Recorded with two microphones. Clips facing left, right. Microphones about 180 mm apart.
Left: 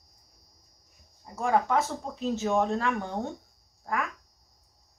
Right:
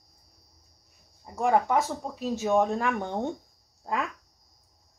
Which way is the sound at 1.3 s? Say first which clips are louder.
Right 2 dB; 15° right (ahead or behind).